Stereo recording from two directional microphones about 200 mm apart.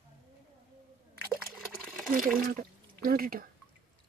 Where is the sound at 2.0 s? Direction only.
45° right (ahead or behind).